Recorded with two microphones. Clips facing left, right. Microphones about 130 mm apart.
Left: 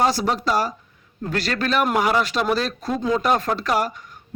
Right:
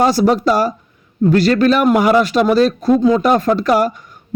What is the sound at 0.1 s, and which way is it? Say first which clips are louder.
A man's voice: right 8 dB; 50° right (ahead or behind).